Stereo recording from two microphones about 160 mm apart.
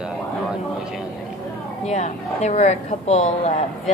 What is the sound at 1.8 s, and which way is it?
A woman's voice, 45° left (ahead or behind).